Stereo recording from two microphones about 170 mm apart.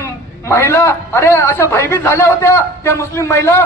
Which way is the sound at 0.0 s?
15° left (ahead or behind).